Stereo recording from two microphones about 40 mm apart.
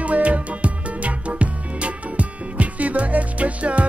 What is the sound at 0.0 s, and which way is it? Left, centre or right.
Music, right.